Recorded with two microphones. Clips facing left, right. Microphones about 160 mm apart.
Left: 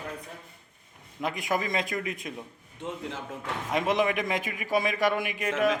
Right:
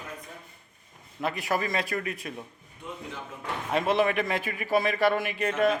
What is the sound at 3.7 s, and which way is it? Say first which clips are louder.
A man's voice: right 1 dB; 15° left (ahead or behind).